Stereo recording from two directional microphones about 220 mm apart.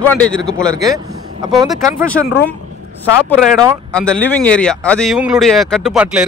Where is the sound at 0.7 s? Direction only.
15° right (ahead or behind).